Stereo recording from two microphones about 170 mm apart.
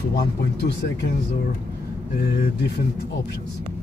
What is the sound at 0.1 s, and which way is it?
Speech, 70° left (ahead or behind).